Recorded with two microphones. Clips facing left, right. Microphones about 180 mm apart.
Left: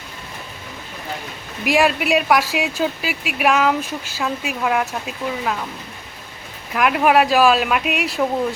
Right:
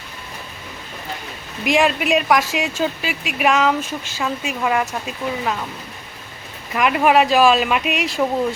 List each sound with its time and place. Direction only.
1.6 s speech: 5° left (ahead or behind)
6.7 s speech: centre (ahead or behind)